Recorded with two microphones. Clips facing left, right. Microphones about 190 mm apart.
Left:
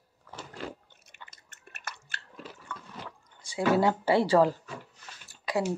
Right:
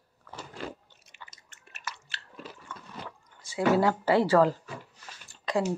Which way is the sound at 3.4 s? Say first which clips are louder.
Right 1 dB; 20° left (ahead or behind).